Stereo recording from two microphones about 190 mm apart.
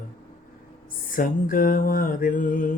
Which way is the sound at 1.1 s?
45° left (ahead or behind).